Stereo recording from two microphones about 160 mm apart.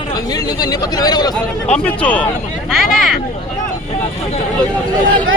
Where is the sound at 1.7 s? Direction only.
10° left (ahead or behind).